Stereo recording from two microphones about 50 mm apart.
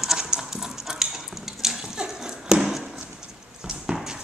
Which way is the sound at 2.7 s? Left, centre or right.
Centre.